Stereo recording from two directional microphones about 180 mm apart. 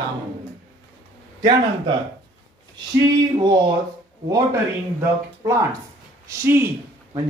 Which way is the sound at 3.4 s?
20° right (ahead or behind).